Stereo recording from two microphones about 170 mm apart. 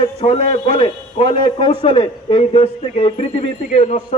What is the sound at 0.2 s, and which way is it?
A man's voice, 35° left (ahead or behind).